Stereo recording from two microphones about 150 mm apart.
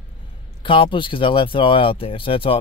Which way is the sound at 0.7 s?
35° left (ahead or behind).